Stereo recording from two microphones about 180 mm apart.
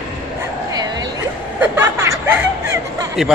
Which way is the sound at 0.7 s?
20° right (ahead or behind).